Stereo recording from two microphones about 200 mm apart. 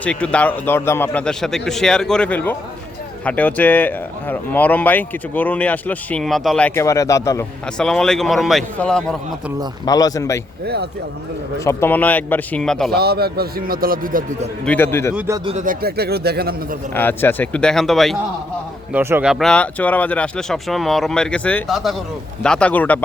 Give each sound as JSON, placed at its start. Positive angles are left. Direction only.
{"t": 0.0, "sound": "speech", "side_deg": 5}
{"t": 7.8, "sound": "speech", "side_deg": 5}
{"t": 9.8, "sound": "speech", "side_deg": 20}
{"t": 11.6, "sound": "speech", "side_deg": 15}
{"t": 13.0, "sound": "a man's voice", "side_deg": -50}
{"t": 14.6, "sound": "speech", "side_deg": 10}
{"t": 15.4, "sound": "a man's voice", "side_deg": -40}
{"t": 16.9, "sound": "speech", "side_deg": 10}
{"t": 18.9, "sound": "speech", "side_deg": -10}